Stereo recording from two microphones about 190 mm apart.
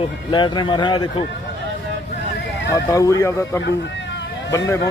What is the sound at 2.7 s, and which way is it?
Speech, 15° left (ahead or behind).